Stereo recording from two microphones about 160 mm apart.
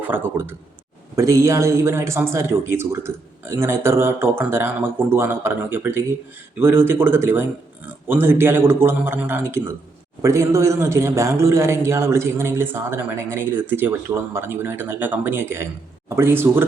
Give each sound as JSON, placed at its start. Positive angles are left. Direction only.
{"t": 0.1, "sound": "a man's voice", "side_deg": -15}